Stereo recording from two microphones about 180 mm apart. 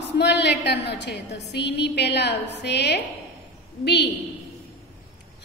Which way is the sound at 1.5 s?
70° left (ahead or behind).